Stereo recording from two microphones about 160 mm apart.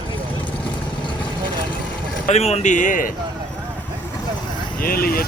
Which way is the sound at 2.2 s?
40° left (ahead or behind).